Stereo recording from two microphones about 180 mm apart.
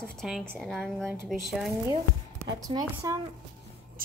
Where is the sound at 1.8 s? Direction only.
20° right (ahead or behind).